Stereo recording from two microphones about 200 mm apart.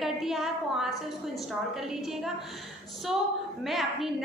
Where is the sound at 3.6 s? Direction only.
Centre (ahead or behind).